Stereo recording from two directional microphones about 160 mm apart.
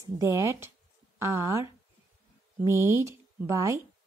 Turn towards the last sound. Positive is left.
turn(degrees=-20)  # may be behind; listen again after turning